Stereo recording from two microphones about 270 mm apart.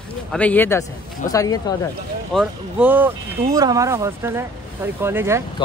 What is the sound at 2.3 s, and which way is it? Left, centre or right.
Speech, centre.